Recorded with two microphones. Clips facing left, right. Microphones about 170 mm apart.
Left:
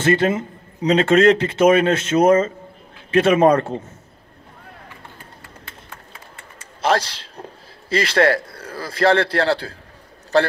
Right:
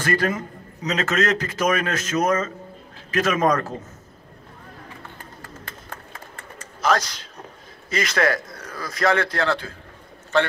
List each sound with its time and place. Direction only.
0.0 s speech: 25° left (ahead or behind)
5.7 s run: 45° right (ahead or behind)
6.8 s a man's voice: 30° left (ahead or behind)